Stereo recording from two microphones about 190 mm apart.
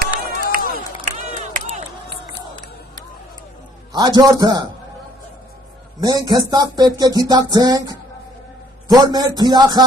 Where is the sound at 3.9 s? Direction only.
20° right (ahead or behind).